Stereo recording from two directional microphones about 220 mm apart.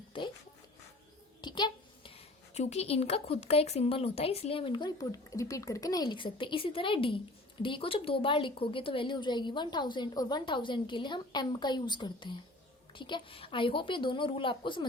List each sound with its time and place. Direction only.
0.1 s music: 25° left (ahead or behind)
1.4 s a sound: 20° left (ahead or behind)
2.6 s a woman's voice: 30° left (ahead or behind)